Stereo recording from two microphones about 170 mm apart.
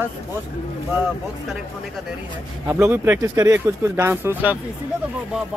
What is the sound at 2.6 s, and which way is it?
Speech, 15° right (ahead or behind).